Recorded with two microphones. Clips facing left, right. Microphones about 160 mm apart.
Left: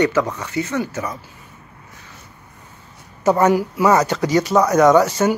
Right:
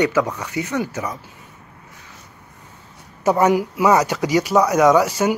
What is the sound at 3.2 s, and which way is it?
Speech, 15° right (ahead or behind).